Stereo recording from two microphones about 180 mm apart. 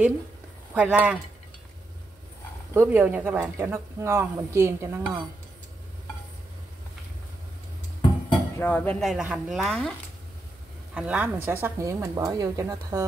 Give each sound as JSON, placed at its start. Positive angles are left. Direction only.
{"t": 0.7, "sound": "speech", "side_deg": -10}
{"t": 2.7, "sound": "speech", "side_deg": -10}
{"t": 8.3, "sound": "speech", "side_deg": 10}
{"t": 11.0, "sound": "speech", "side_deg": -10}